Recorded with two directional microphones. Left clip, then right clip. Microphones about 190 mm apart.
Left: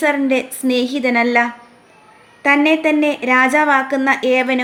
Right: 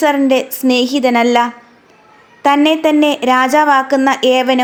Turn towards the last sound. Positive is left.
turn(degrees=-25)  # may be behind; listen again after turning